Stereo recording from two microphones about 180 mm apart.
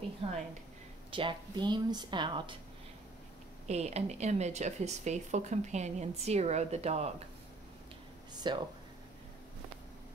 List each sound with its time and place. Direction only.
1.1 s a woman's voice: 25° right (ahead or behind)
3.6 s speech: 35° right (ahead or behind)
8.5 s a woman's voice: 25° right (ahead or behind)